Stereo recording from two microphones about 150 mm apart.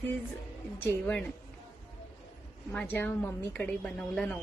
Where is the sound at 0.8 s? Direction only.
10° left (ahead or behind).